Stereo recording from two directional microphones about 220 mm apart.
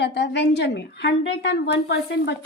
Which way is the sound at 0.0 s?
50° left (ahead or behind).